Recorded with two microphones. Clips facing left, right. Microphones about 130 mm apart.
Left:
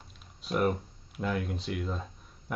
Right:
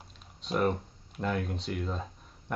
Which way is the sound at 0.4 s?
5° left (ahead or behind).